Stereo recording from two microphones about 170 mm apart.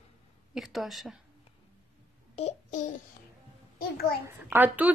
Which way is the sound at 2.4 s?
45° left (ahead or behind).